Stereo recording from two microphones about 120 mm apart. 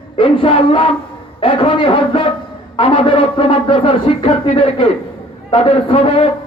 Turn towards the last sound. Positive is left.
turn(degrees=50)  # may be behind; listen again after turning